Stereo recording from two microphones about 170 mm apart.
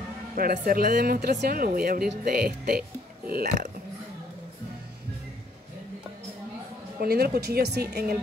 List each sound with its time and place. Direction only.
0.4 s speech: 60° right (ahead or behind)
7.0 s a woman's voice: 65° right (ahead or behind)